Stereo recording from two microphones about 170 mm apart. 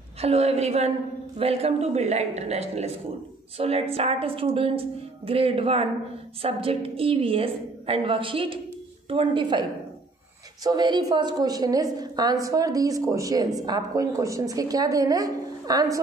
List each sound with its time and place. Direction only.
0.2 s a woman's voice: 35° right (ahead or behind); by 16.0 s 20° right (ahead or behind)